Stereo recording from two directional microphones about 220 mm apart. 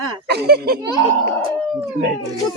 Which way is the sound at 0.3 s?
45° right (ahead or behind).